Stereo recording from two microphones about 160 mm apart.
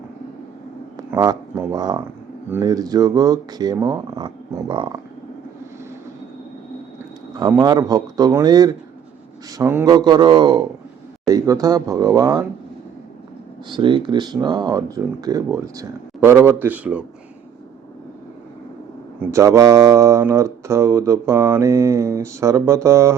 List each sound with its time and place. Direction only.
0.9 s speech: 25° right (ahead or behind)
7.3 s speech: 25° right (ahead or behind)
13.7 s speech: 30° right (ahead or behind); by 17.0 s 10° right (ahead or behind)
19.2 s speech: 15° right (ahead or behind)